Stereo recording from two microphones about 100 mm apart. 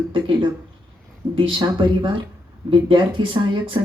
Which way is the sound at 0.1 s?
55° right (ahead or behind).